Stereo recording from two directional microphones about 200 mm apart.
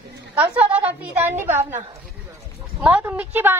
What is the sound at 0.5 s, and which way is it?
Speech, 5° right (ahead or behind).